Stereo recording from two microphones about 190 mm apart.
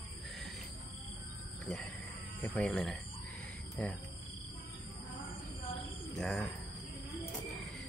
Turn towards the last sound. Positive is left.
turn(degrees=0)  # may be behind; listen again after turning